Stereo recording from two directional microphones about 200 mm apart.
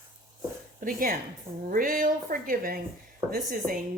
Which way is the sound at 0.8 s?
45° right (ahead or behind).